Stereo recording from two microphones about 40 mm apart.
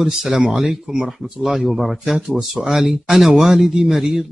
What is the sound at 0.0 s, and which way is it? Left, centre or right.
Speech, centre.